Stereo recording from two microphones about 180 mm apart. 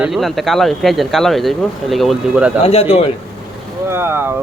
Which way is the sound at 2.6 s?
35° left (ahead or behind).